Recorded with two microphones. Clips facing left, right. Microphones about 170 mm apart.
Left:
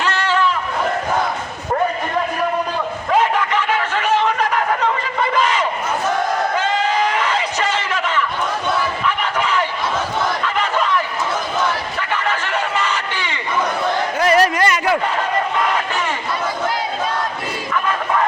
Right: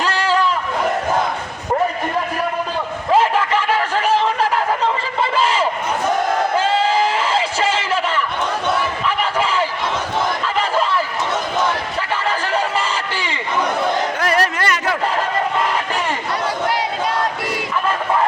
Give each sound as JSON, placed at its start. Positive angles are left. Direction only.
{"t": 0.0, "sound": "sheep", "side_deg": -35}
{"t": 3.1, "sound": "a sound", "side_deg": -30}
{"t": 9.0, "sound": "crowd", "side_deg": -30}
{"t": 10.4, "sound": "battle cry", "side_deg": -35}
{"t": 12.3, "sound": "chatter", "side_deg": -35}
{"t": 14.2, "sound": "a sound", "side_deg": 10}